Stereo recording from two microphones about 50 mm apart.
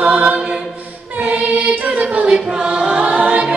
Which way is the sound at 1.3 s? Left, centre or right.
Right.